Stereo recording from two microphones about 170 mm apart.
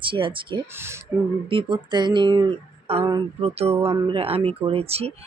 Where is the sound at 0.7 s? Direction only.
15° right (ahead or behind).